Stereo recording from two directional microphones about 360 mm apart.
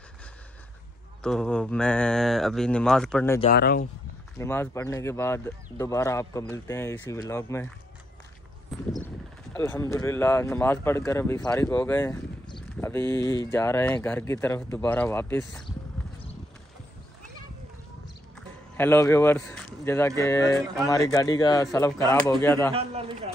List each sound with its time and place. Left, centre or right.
1.2 s speech: centre
3.3 s speech: left
4.4 s speech: centre
18.8 s speech: centre
22.7 s a man's voice: centre